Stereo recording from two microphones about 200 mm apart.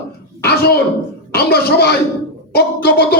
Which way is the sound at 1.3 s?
55° left (ahead or behind).